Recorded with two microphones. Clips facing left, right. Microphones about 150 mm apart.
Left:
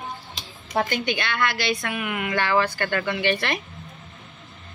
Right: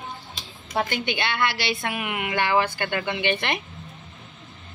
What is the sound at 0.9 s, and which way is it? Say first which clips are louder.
Speech: left 1 dB; 25° right (ahead or behind).